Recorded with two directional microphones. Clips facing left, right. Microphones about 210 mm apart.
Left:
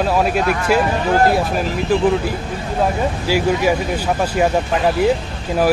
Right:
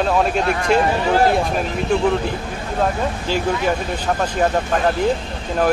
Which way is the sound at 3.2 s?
10° left (ahead or behind).